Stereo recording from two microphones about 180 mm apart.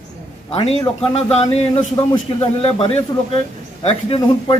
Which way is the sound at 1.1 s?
35° left (ahead or behind).